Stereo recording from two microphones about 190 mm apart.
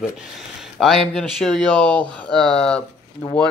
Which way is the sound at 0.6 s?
Centre (ahead or behind).